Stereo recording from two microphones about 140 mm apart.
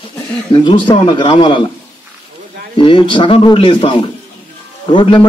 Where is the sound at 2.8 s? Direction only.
35° left (ahead or behind).